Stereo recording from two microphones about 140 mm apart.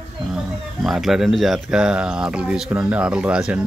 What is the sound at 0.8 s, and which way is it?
Speech, centre (ahead or behind).